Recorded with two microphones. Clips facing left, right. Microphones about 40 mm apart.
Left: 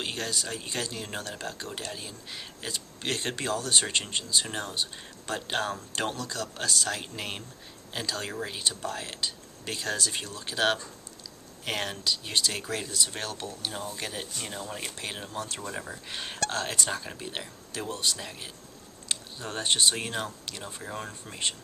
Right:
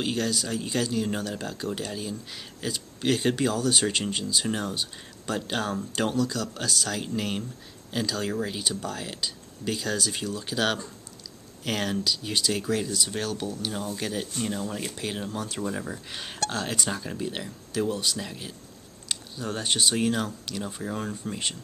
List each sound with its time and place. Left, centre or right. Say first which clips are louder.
0.0 s speech: right 5 dB; centre